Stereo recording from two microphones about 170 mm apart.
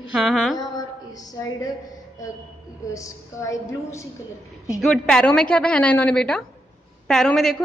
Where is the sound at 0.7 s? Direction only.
20° left (ahead or behind).